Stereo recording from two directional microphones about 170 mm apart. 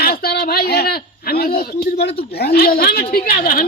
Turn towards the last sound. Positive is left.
turn(degrees=55)  # may be behind; listen again after turning